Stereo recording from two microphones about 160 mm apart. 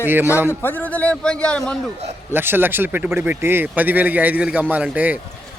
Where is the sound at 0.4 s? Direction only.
10° left (ahead or behind).